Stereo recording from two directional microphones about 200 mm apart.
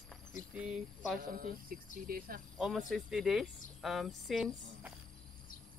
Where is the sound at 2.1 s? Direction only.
50° right (ahead or behind).